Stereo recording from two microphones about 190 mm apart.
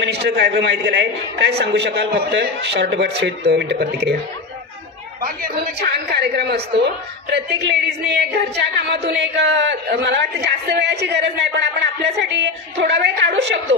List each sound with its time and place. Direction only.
0.0 s a woman's voice: 60° right (ahead or behind)
5.2 s a woman's voice: 55° right (ahead or behind)